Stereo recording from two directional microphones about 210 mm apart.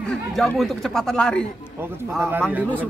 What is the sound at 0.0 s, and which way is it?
Speech, centre (ahead or behind).